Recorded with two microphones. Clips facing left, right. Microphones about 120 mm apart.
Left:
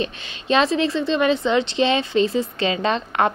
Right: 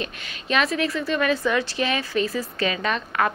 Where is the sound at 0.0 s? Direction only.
30° left (ahead or behind).